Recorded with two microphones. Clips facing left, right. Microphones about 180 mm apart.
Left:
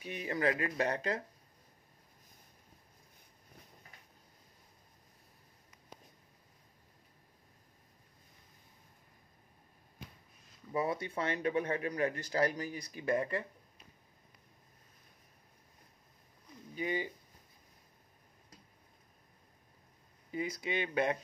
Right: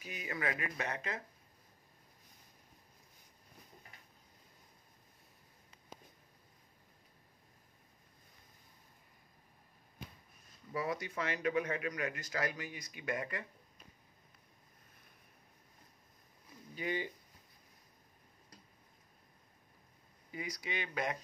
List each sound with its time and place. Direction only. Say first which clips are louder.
0.0 s speech: left 6 dB; 30° left (ahead or behind)
10.7 s speech: left 4 dB; 25° left (ahead or behind)
16.7 s speech: left 2 dB; 20° left (ahead or behind)
20.2 s speech: left 6 dB; 25° left (ahead or behind)